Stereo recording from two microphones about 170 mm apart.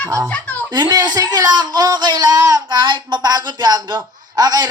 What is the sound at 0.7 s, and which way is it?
A man's voice, 25° right (ahead or behind).